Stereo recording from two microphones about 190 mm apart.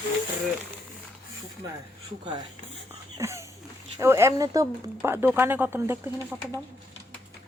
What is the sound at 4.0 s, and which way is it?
Speech, 15° right (ahead or behind).